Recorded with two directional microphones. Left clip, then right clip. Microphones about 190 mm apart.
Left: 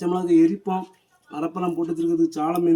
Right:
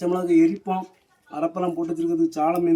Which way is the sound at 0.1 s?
15° right (ahead or behind).